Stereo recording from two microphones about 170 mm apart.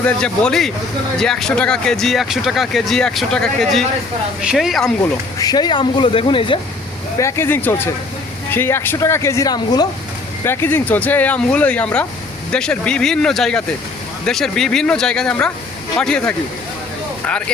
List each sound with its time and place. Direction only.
0.0 s speech: 5° left (ahead or behind)
5.4 s speech: 25° left (ahead or behind)
7.2 s speech: 15° left (ahead or behind)